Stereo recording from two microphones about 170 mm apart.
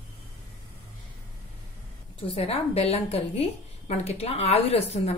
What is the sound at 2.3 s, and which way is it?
A woman's voice, 35° left (ahead or behind).